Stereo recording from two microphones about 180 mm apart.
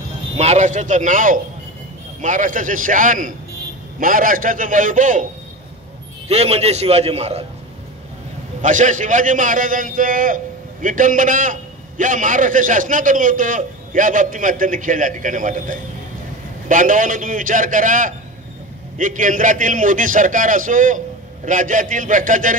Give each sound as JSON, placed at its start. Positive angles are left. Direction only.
{"t": 0.4, "sound": "a man's voice", "side_deg": -40}
{"t": 6.2, "sound": "a man's voice", "side_deg": -35}
{"t": 8.6, "sound": "a man's voice", "side_deg": -45}